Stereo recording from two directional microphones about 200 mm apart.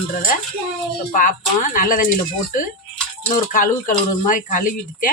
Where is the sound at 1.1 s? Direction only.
40° left (ahead or behind).